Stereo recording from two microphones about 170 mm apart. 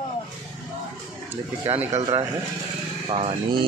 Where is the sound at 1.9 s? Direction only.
30° right (ahead or behind).